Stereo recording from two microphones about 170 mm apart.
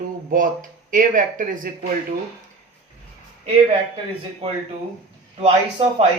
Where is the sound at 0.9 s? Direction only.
50° right (ahead or behind).